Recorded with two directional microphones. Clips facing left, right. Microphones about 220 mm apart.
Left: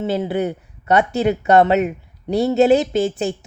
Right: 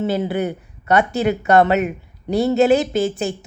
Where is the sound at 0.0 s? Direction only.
20° left (ahead or behind).